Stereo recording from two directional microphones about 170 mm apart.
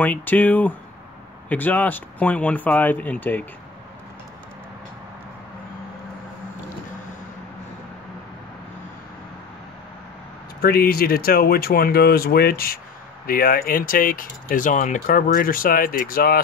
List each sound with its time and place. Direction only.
0.0 s speech: 10° left (ahead or behind)
10.6 s speech: 65° left (ahead or behind)